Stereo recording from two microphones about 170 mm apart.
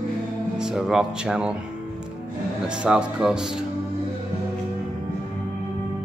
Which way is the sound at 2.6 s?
5° right (ahead or behind).